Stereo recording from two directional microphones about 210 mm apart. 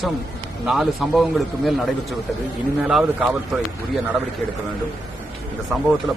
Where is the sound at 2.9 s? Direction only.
5° right (ahead or behind).